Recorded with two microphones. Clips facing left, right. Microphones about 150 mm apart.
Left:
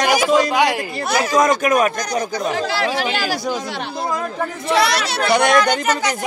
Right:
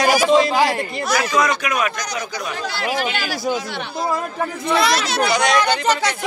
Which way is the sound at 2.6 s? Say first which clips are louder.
Even; 80° left.